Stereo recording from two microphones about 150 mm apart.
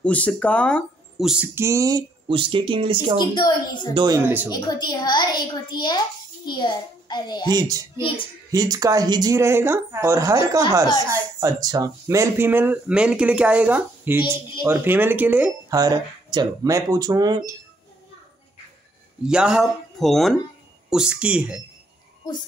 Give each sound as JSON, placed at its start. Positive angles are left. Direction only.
{"t": 0.0, "sound": "speech", "side_deg": 10}
{"t": 1.5, "sound": "speech", "side_deg": -20}
{"t": 2.2, "sound": "speech", "side_deg": -35}
{"t": 3.2, "sound": "a child's voice", "side_deg": 25}
{"t": 3.9, "sound": "speech", "side_deg": -30}
{"t": 4.2, "sound": "speech", "side_deg": -10}
{"t": 4.5, "sound": "a child's voice", "side_deg": 25}
{"t": 7.4, "sound": "speech", "side_deg": -25}
{"t": 15.7, "sound": "speech", "side_deg": -25}
{"t": 19.2, "sound": "speech", "side_deg": -5}